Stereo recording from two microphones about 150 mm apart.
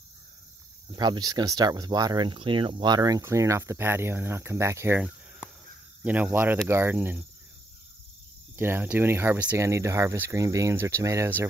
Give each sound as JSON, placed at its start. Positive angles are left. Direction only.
{"t": 0.9, "sound": "speech", "side_deg": -25}
{"t": 8.5, "sound": "speech", "side_deg": -15}